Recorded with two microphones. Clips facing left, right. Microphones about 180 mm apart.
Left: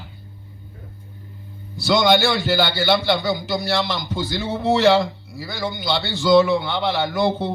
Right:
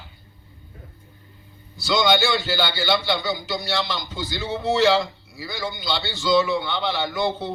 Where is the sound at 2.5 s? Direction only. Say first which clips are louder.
Left 4 dB; 60° left (ahead or behind).